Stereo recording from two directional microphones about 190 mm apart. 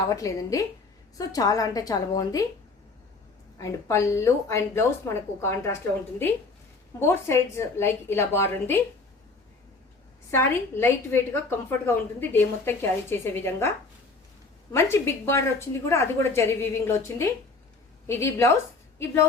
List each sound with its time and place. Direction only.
0.1 s a woman's voice: 15° left (ahead or behind)
3.6 s a woman's voice: 15° left (ahead or behind)
7.0 s a woman's voice: 15° left (ahead or behind)
10.3 s a woman's voice: 10° left (ahead or behind)